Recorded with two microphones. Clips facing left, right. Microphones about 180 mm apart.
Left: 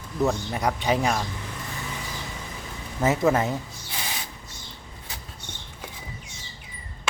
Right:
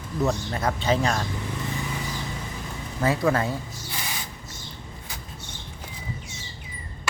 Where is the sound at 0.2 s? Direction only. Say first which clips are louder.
Left 1 dB; 15° left (ahead or behind).